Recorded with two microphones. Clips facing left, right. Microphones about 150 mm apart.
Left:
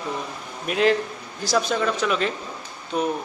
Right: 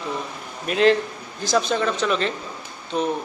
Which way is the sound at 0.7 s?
5° left (ahead or behind).